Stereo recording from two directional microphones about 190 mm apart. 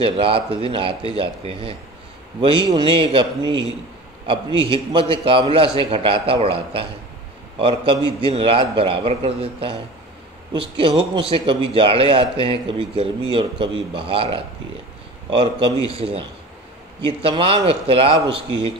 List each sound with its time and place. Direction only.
0.0 s a man's voice: 30° right (ahead or behind)